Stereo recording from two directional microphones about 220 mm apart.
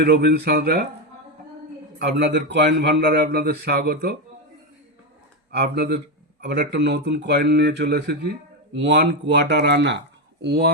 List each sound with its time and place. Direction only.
0.0 s speech: 45° right (ahead or behind)
2.0 s speech: 50° right (ahead or behind)
5.5 s speech: 45° right (ahead or behind)